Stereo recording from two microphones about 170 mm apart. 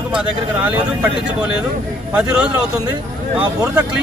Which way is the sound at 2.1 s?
5° right (ahead or behind).